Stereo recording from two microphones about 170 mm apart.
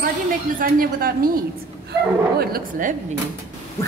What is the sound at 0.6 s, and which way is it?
Speech, 60° right (ahead or behind).